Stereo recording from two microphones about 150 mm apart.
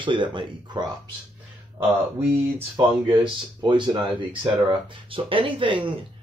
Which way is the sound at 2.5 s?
25° right (ahead or behind).